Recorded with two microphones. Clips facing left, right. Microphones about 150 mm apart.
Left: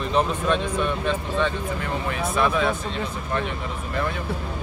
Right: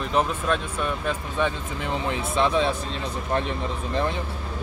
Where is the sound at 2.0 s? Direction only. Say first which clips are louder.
Left 1 dB; 25° right (ahead or behind).